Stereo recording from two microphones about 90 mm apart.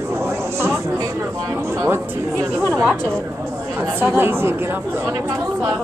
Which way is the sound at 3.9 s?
25° right (ahead or behind).